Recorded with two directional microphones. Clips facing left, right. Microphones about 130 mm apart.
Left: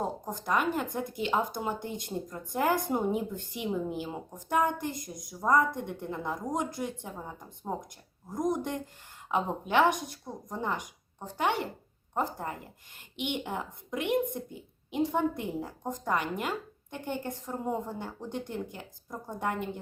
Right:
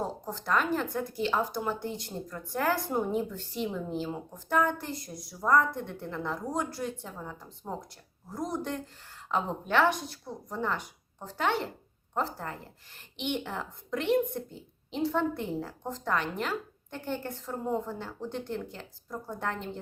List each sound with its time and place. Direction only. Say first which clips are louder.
0.0 s a woman's voice: left 1 dB; 15° left (ahead or behind)
8.4 s a woman's voice: left 3 dB; 15° left (ahead or behind)